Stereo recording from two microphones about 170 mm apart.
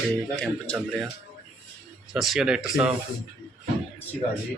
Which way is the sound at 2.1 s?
Centre (ahead or behind).